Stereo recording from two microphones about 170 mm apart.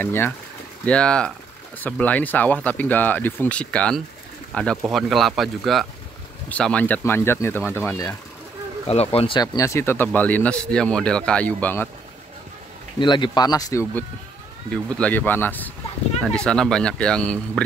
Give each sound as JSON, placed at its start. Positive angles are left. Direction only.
{"t": 0.0, "sound": "speech", "side_deg": 15}
{"t": 8.8, "sound": "speech", "side_deg": 35}
{"t": 9.4, "sound": "speech", "side_deg": 20}
{"t": 13.0, "sound": "speech", "side_deg": 25}
{"t": 14.7, "sound": "speech", "side_deg": 5}